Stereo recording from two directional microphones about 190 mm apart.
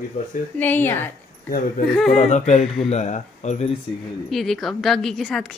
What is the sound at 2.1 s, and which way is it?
Speech, 40° left (ahead or behind).